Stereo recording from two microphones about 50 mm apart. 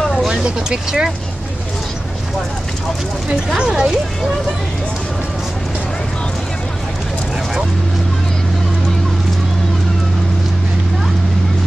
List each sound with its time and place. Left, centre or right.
0.3 s speech: centre
3.3 s speech: centre